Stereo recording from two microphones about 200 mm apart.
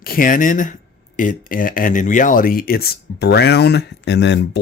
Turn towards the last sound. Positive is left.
turn(degrees=60)  # may be behind; listen again after turning